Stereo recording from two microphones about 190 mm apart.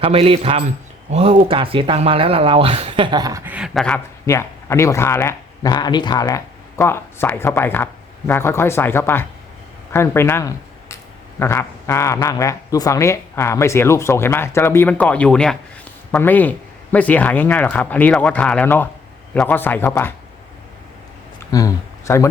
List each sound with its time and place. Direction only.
0.0 s a man's voice: 30° right (ahead or behind); by 20.1 s 10° left (ahead or behind)
21.5 s speech: 15° left (ahead or behind)